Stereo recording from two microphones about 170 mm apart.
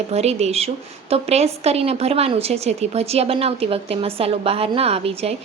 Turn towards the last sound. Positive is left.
turn(degrees=-35)  # may be behind; listen again after turning